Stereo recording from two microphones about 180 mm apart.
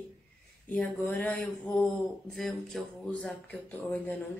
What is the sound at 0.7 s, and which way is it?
Speech, 10° left (ahead or behind).